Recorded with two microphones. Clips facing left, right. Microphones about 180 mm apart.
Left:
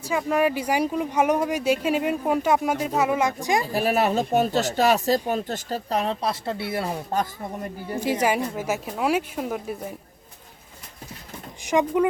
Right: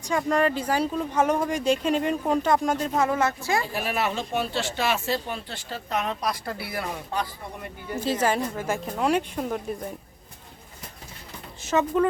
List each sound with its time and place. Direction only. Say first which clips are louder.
0.0 s speech: left 1 dB; 5° left (ahead or behind)
3.7 s speech: left 6 dB; 40° left (ahead or behind)
8.0 s speech: left 1 dB; 10° left (ahead or behind)
11.6 s speech: left 2 dB; 15° left (ahead or behind)